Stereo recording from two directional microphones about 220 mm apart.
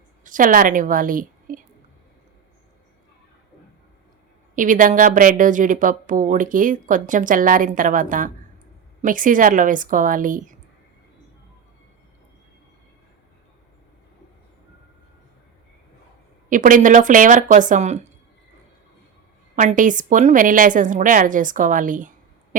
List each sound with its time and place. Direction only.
0.3 s a woman's voice: 35° right (ahead or behind)
4.5 s speech: 35° right (ahead or behind)
16.5 s speech: 40° right (ahead or behind)
19.5 s speech: 35° right (ahead or behind)